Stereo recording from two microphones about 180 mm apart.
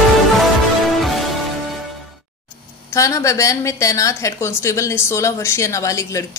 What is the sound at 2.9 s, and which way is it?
A woman's voice, 20° left (ahead or behind).